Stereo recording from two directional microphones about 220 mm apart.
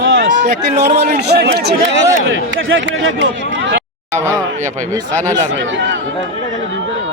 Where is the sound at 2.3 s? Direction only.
60° right (ahead or behind).